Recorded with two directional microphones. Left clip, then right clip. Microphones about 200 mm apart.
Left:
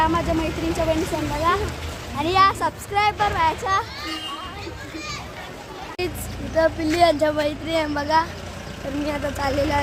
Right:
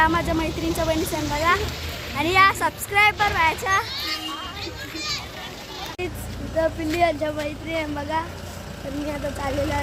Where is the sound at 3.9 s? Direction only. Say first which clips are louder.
Right 3 dB; 50° left (ahead or behind).